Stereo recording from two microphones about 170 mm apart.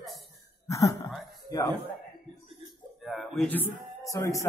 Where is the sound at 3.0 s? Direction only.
Centre (ahead or behind); by 4.4 s 15° left (ahead or behind).